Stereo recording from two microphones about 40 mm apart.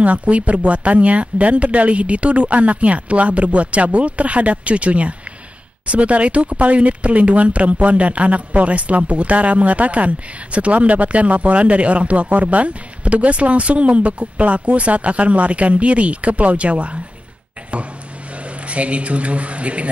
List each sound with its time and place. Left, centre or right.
0.0 s speech: right
18.7 s speech: right